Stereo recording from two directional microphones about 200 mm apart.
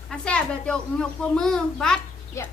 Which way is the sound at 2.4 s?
15° left (ahead or behind).